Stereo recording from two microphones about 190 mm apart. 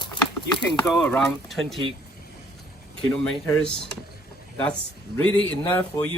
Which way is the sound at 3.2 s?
5° left (ahead or behind).